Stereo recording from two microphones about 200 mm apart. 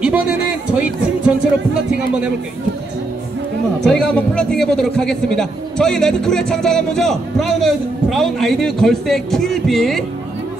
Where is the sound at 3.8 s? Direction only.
5° left (ahead or behind).